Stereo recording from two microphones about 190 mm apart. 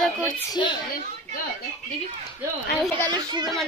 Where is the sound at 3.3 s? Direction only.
20° right (ahead or behind).